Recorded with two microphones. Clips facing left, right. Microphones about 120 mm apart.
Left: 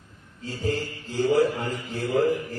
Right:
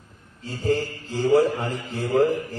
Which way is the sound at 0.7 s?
40° right (ahead or behind).